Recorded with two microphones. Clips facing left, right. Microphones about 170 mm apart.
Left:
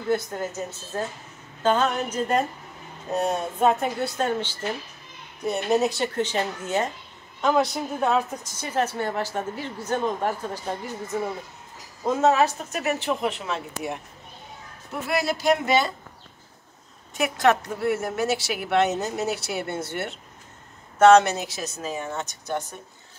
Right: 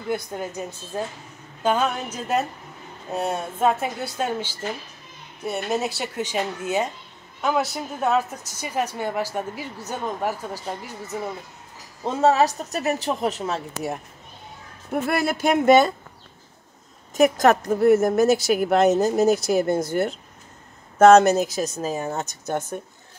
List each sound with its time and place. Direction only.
0.1 s speech: 15° right (ahead or behind)
12.1 s a woman's voice: 35° right (ahead or behind)
14.9 s a man's voice: 55° right (ahead or behind)
17.1 s a woman's voice: 45° right (ahead or behind)